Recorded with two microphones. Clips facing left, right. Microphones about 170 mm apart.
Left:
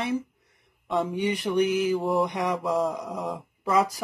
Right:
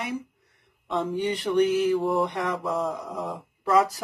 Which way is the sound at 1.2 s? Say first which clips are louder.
Right 3 dB; 10° left (ahead or behind).